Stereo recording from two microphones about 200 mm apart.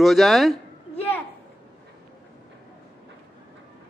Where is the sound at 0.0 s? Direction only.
Centre (ahead or behind).